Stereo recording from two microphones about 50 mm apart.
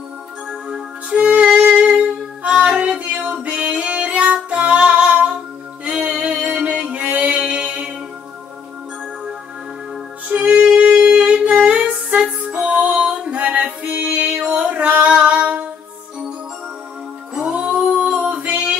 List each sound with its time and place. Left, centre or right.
0.5 s music: centre
10.2 s music: right
14.5 s singing: right
17.4 s music: right
17.7 s female singing: centre